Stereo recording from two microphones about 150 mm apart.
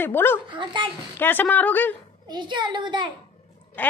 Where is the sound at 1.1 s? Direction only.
15° left (ahead or behind).